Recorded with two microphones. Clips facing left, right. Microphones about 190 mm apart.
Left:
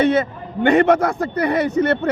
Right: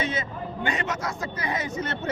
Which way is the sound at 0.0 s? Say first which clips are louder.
Left 12 dB; 60° left (ahead or behind).